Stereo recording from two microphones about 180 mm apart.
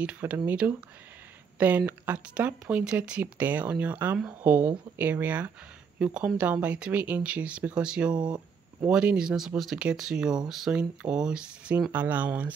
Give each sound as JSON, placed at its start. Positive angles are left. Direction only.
{"t": 0.0, "sound": "speech", "side_deg": -10}
{"t": 8.1, "sound": "speech", "side_deg": -25}
{"t": 8.8, "sound": "speech", "side_deg": -5}